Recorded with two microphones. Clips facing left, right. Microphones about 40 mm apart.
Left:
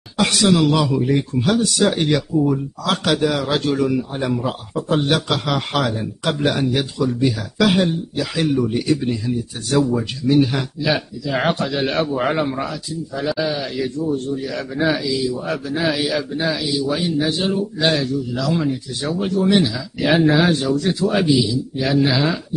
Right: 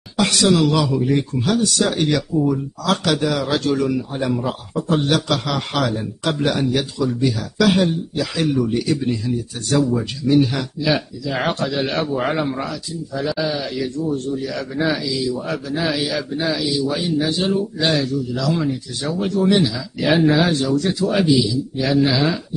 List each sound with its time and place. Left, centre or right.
0.2 s a man's voice: centre
4.7 s a man's voice: centre
19.1 s a man's voice: centre